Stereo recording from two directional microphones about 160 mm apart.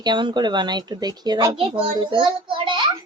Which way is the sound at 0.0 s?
30° right (ahead or behind).